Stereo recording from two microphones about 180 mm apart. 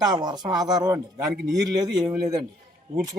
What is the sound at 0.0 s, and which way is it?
Speech, 25° right (ahead or behind).